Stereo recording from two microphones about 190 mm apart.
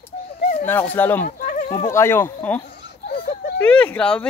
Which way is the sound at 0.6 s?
10° left (ahead or behind).